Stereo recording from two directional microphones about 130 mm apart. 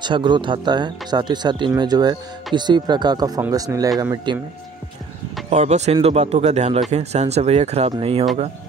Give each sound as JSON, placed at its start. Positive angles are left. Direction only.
{"t": 0.0, "sound": "speech", "side_deg": -35}
{"t": 5.5, "sound": "speech", "side_deg": -55}